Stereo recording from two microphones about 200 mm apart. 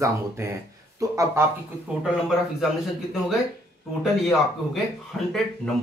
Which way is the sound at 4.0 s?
Centre (ahead or behind).